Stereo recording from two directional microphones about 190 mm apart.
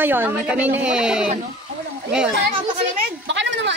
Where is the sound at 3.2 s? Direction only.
70° right (ahead or behind).